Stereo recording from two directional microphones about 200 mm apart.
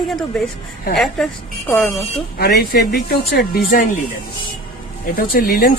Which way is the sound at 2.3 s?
50° left (ahead or behind).